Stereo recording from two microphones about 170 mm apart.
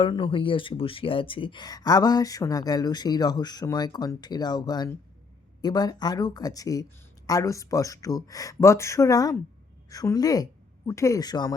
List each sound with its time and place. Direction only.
0.0 s speech: 30° left (ahead or behind)